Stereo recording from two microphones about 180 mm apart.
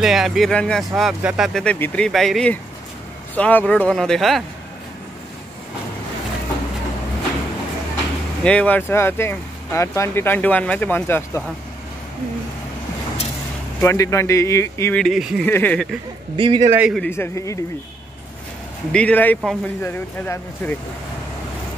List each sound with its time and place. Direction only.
0.0 s speech: centre (ahead or behind)
8.5 s speech: 5° left (ahead or behind)
13.7 s speech: 15° left (ahead or behind)
15.0 s speech: centre (ahead or behind)
15.4 s speech: 10° left (ahead or behind)
16.3 s a man's voice: 30° right (ahead or behind)
16.7 s speech: 5° right (ahead or behind)
17.0 s speech: 15° left (ahead or behind)
18.9 s speech: 5° left (ahead or behind)